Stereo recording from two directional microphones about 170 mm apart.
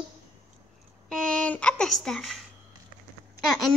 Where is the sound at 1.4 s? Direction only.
5° left (ahead or behind).